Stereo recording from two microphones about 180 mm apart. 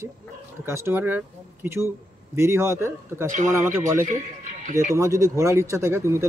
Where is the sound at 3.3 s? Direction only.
45° right (ahead or behind).